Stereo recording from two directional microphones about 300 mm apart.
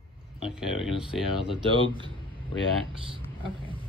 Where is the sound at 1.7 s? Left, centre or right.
Centre.